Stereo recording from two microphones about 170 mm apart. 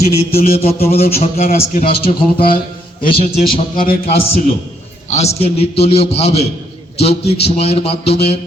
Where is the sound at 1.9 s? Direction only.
30° left (ahead or behind).